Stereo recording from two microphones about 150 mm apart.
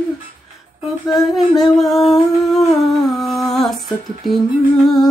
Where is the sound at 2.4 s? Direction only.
Centre (ahead or behind).